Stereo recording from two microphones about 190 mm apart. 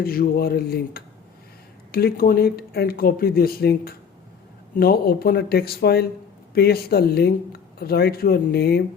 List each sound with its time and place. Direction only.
0.0 s speech: 50° left (ahead or behind)